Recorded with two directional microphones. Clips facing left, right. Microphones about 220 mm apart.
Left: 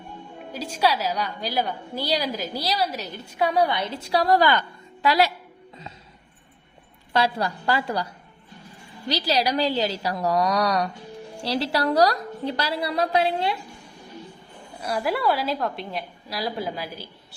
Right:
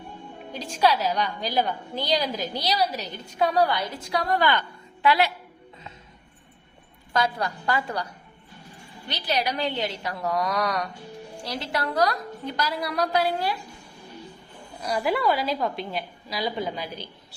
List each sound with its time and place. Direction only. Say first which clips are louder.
0.5 s a woman's voice: right 1 dB; 5° left (ahead or behind); by 5.3 s 40° left (ahead or behind)
7.1 s a woman's voice: left 2 dB; 30° left (ahead or behind)
9.1 s a woman's voice: left 4 dB; 35° left (ahead or behind)
14.8 s a woman's voice: even; centre (ahead or behind)